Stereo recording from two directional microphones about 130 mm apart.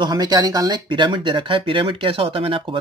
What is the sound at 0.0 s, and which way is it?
Speech, 35° right (ahead or behind).